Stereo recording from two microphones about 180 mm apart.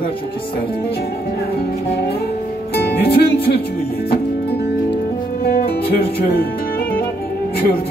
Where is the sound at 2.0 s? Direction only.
60° left (ahead or behind).